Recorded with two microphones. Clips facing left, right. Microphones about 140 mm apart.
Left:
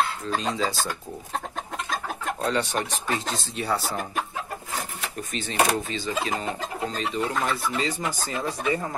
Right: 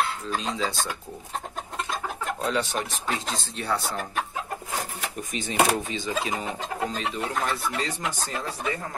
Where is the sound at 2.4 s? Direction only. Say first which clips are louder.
Left 2 dB; centre (ahead or behind).